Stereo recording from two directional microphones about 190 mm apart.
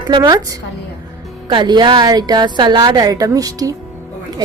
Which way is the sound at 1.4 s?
25° right (ahead or behind).